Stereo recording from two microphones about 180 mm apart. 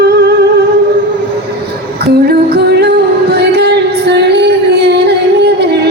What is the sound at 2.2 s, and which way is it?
Music, 65° right (ahead or behind).